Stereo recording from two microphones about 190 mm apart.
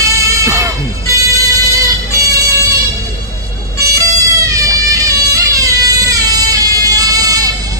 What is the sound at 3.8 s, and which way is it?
Music, 15° right (ahead or behind).